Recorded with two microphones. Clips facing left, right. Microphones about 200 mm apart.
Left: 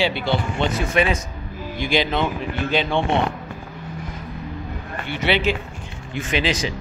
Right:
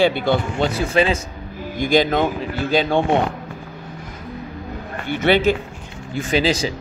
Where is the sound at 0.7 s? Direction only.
30° right (ahead or behind).